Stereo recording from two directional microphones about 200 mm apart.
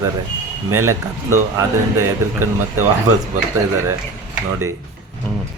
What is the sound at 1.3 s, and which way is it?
Speech, 15° right (ahead or behind).